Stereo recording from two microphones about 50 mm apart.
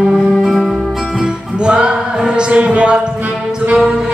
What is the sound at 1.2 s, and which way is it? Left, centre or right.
Music, centre.